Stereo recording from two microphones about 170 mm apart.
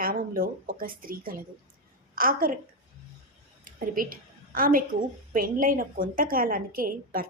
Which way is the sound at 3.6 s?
55° right (ahead or behind).